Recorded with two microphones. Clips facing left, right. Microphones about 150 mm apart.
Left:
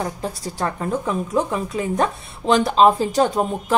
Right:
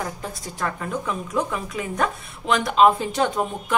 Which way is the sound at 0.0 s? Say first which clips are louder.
Left 5 dB; 30° left (ahead or behind).